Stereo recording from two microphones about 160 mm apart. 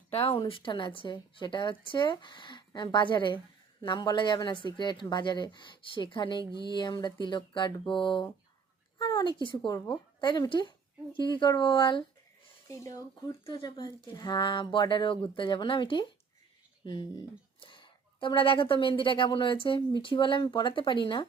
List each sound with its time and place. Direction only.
0.1 s speech: 40° left (ahead or behind)
12.6 s speech: 20° left (ahead or behind)